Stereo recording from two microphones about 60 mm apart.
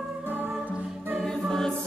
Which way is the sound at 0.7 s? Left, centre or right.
Right.